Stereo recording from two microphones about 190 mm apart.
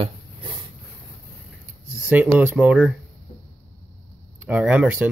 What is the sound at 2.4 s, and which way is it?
Speech, 5° right (ahead or behind).